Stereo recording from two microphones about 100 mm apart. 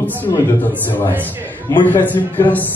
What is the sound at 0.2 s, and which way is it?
A man's voice, 20° left (ahead or behind).